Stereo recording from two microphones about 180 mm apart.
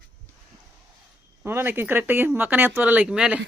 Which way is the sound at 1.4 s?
15° right (ahead or behind).